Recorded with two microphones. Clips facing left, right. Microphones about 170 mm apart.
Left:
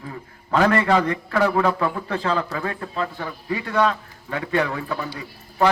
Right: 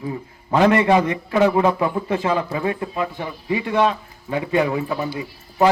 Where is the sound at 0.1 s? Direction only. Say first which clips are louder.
Right 1 dB; 20° right (ahead or behind).